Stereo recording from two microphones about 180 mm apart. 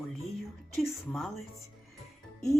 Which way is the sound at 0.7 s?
Centre (ahead or behind).